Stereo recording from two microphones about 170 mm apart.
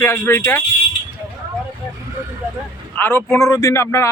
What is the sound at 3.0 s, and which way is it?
Speech, 15° left (ahead or behind).